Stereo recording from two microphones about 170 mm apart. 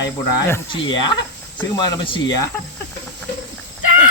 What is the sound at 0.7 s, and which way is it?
Speech, 30° left (ahead or behind).